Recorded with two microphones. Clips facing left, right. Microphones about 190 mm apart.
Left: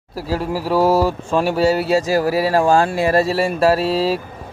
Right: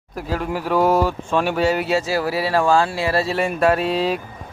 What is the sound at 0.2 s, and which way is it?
Speech, 35° left (ahead or behind).